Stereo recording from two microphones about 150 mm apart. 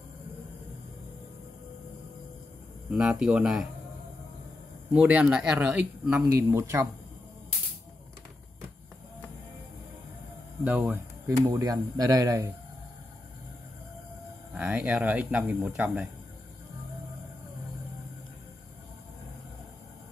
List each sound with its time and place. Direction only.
2.9 s speech: 5° right (ahead or behind)
4.9 s speech: 10° right (ahead or behind)
10.6 s speech: 10° right (ahead or behind)
14.5 s speech: 5° right (ahead or behind)